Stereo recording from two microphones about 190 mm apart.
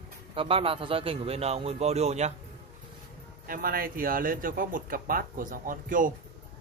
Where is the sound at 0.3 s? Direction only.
30° right (ahead or behind).